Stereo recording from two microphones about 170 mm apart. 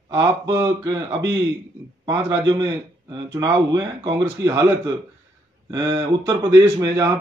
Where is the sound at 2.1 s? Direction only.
25° right (ahead or behind).